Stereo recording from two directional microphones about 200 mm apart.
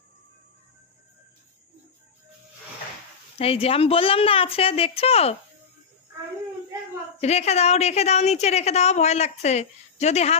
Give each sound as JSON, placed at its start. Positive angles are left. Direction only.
{"t": 3.3, "sound": "a woman's voice", "side_deg": 30}
{"t": 7.2, "sound": "a woman's voice", "side_deg": 35}